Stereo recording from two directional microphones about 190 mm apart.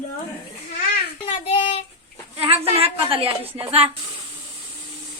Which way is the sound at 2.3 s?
30° right (ahead or behind).